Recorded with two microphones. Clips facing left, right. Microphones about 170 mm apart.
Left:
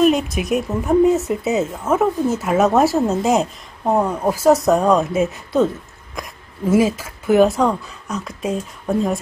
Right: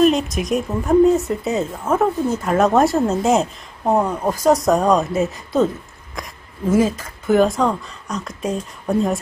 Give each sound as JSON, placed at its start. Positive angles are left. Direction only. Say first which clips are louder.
{"t": 0.0, "sound": "speech", "louder": "even", "side_deg": 5}